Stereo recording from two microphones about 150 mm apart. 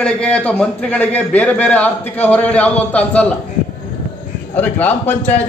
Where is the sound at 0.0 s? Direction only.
10° left (ahead or behind).